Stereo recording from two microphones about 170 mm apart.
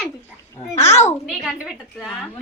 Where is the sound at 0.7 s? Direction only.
40° left (ahead or behind).